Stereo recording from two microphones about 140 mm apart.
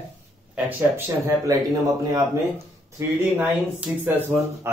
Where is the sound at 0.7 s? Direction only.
20° right (ahead or behind).